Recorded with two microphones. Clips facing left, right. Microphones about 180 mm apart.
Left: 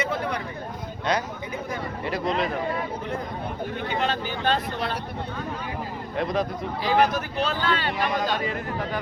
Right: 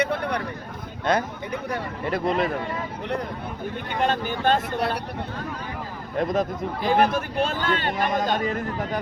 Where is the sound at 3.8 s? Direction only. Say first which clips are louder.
Right 3 dB; 50° right (ahead or behind).